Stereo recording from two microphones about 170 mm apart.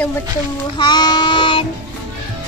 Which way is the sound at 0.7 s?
25° left (ahead or behind).